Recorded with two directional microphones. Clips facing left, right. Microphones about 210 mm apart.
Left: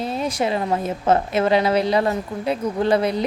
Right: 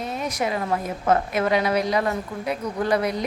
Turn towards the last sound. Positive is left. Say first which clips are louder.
# left 4 dB
turn(degrees=30)  # may be behind; listen again after turning